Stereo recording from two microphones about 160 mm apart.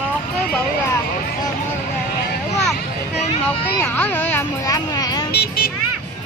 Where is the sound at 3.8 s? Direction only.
10° left (ahead or behind).